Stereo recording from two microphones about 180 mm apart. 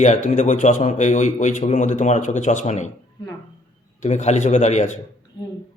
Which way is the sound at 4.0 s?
40° left (ahead or behind).